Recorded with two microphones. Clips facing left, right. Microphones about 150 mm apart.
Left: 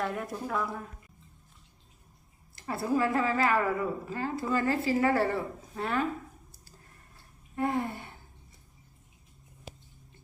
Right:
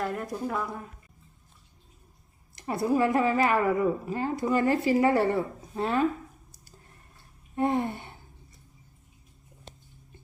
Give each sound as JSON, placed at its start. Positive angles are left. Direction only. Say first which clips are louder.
{"t": 0.0, "sound": "a woman's voice", "louder": "right 2 dB", "side_deg": 0}
{"t": 2.6, "sound": "a woman's voice", "louder": "right 4 dB", "side_deg": -20}
{"t": 7.5, "sound": "gasp", "louder": "right 4 dB", "side_deg": -20}